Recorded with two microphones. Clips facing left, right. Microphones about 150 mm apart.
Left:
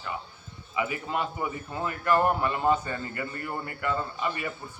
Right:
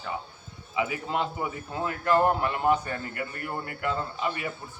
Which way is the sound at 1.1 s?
20° right (ahead or behind).